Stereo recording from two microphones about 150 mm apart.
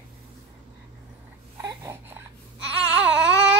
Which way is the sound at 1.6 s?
20° right (ahead or behind).